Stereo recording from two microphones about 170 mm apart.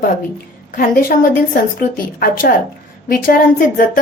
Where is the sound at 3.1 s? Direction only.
55° left (ahead or behind).